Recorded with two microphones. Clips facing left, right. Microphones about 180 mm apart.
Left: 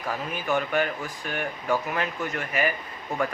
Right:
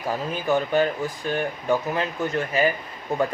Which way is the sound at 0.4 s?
30° right (ahead or behind).